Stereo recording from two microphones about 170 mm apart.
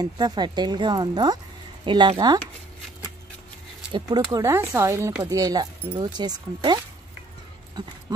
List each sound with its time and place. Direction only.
0.0 s speech: 25° right (ahead or behind)
3.9 s speech: 20° right (ahead or behind)